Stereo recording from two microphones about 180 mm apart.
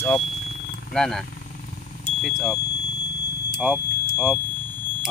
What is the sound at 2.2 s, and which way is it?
Speech, centre (ahead or behind).